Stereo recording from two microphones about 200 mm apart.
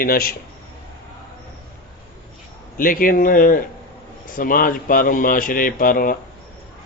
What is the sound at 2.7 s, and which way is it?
A man's voice, 45° left (ahead or behind).